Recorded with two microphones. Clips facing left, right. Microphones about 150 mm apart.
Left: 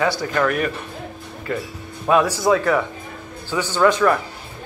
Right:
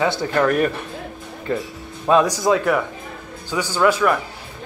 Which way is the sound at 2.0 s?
20° right (ahead or behind).